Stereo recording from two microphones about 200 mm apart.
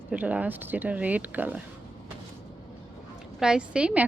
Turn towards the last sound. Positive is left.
turn(degrees=-5)  # may be behind; listen again after turning